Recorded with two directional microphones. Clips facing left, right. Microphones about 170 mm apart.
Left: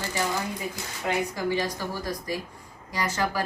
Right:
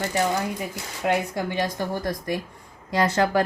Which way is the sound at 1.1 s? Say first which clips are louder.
Right 2 dB; 60° right (ahead or behind).